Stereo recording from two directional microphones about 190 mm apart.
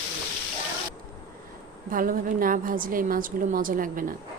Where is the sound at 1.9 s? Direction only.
45° right (ahead or behind).